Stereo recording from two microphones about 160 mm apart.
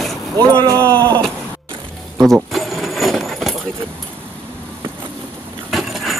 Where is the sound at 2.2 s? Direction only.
Centre (ahead or behind).